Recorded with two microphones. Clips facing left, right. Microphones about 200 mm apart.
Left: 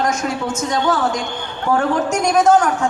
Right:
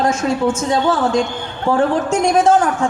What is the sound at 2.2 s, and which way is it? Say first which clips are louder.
Speech: even; 30° right (ahead or behind).